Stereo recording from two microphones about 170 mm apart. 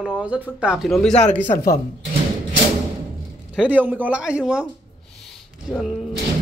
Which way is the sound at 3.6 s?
10° right (ahead or behind).